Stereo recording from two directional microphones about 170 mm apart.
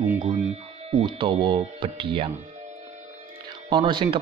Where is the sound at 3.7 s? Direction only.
30° right (ahead or behind).